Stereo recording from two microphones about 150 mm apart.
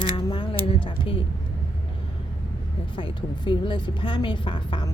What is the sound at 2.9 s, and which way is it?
A woman's voice, 35° left (ahead or behind).